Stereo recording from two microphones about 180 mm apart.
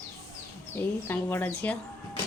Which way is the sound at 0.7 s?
10° left (ahead or behind).